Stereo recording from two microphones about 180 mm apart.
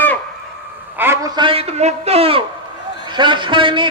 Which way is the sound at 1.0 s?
15° right (ahead or behind).